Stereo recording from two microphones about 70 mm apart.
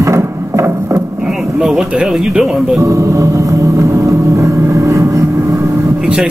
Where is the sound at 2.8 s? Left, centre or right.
Right.